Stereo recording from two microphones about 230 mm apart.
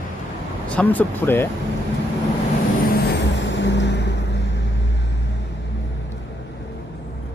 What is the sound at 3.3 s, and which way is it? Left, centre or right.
Vehicle, left.